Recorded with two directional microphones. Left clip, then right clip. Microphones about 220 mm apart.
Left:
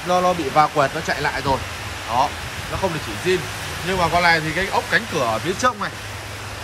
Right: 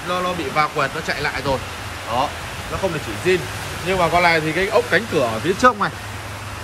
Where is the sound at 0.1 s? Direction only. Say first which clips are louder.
Left 4 dB; 15° left (ahead or behind).